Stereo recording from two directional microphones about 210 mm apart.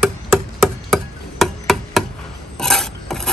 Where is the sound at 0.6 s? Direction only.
Centre (ahead or behind).